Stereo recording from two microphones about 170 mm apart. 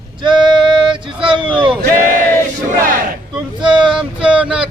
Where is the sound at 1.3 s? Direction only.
30° right (ahead or behind).